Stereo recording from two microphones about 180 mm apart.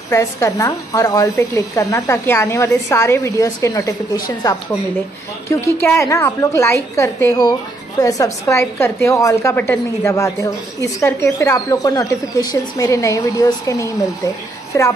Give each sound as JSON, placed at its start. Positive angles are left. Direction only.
{"t": 0.1, "sound": "a woman's voice", "side_deg": 15}